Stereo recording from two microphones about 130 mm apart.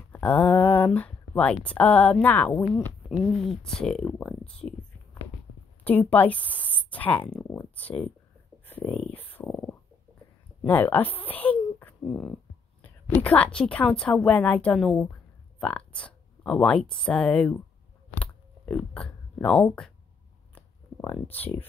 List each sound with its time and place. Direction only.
0.1 s a woman's voice: 10° left (ahead or behind)
5.9 s a woman's voice: 15° left (ahead or behind)
9.3 s stomach rumble: 15° left (ahead or behind)
10.6 s a woman's voice: 10° left (ahead or behind)
18.1 s a sound: 10° left (ahead or behind)
19.6 s a woman's voice: 10° left (ahead or behind)
20.5 s a sound: 20° left (ahead or behind)